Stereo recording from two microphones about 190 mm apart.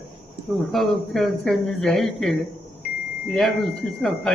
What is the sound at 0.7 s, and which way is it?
Speech, centre (ahead or behind).